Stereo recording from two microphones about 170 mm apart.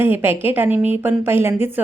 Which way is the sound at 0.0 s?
10° right (ahead or behind).